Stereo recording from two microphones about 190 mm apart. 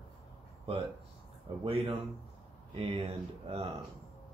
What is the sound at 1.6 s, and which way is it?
Speech, 30° right (ahead or behind).